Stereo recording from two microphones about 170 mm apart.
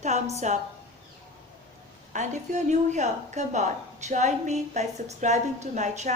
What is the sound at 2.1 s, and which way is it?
A woman's voice, 45° right (ahead or behind).